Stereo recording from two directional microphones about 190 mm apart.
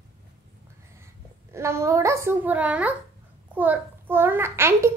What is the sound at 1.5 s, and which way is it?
A child's voice, 15° right (ahead or behind).